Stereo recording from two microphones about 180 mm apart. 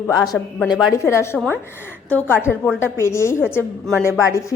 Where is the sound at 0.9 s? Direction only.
15° left (ahead or behind).